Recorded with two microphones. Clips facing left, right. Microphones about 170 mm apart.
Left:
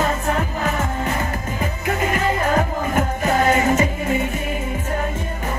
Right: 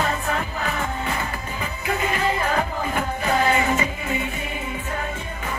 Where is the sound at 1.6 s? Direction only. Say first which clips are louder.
Left 3 dB; 45° left (ahead or behind).